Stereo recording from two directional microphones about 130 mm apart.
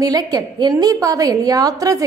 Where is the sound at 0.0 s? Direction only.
30° right (ahead or behind).